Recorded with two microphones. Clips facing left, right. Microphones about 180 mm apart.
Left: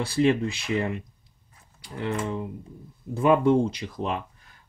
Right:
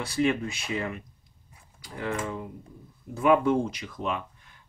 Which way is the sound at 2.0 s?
25° left (ahead or behind).